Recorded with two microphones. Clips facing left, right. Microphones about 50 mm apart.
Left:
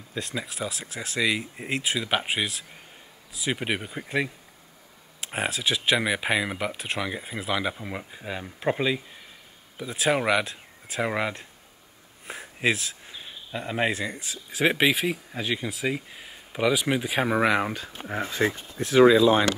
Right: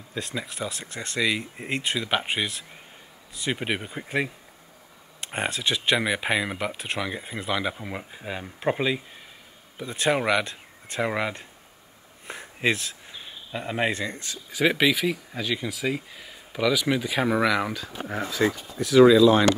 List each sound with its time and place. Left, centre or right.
0.1 s speech: centre
16.3 s a sound: centre
17.0 s speech: centre